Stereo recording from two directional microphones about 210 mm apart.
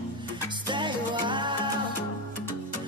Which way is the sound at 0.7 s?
20° right (ahead or behind).